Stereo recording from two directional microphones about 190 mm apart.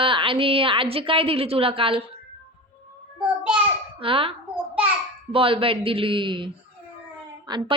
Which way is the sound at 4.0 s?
30° right (ahead or behind).